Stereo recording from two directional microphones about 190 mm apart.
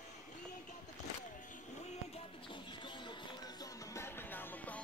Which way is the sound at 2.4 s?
25° left (ahead or behind).